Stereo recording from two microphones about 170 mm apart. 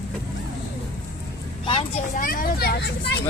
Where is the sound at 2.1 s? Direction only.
55° left (ahead or behind); by 3.2 s 75° left (ahead or behind).